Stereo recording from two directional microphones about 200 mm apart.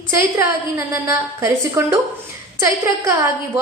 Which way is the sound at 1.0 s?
15° right (ahead or behind).